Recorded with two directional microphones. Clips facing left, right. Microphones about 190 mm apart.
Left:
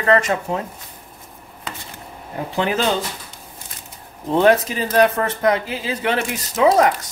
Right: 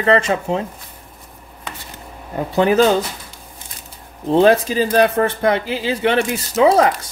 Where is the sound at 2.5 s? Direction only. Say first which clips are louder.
Right 6 dB; 40° right (ahead or behind).